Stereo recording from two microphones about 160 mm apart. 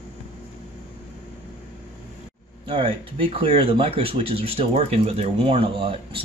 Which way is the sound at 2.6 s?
35° right (ahead or behind).